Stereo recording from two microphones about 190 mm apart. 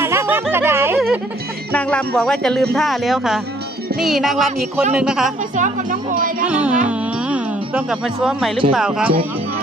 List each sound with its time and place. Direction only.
0.0 s music: 10° right (ahead or behind)
0.9 s music: centre (ahead or behind)
1.7 s speech: 5° left (ahead or behind)
5.5 s speech: 40° right (ahead or behind)
6.4 s music: 5° right (ahead or behind)
8.7 s speech: 5° right (ahead or behind)